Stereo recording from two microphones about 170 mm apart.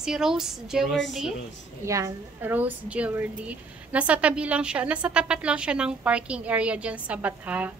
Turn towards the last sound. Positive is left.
turn(degrees=-10)  # may be behind; listen again after turning